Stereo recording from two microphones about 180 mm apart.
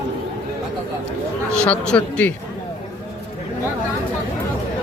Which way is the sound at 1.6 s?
5° left (ahead or behind).